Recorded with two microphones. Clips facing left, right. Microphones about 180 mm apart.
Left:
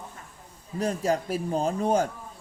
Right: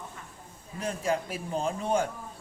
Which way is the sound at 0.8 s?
40° left (ahead or behind).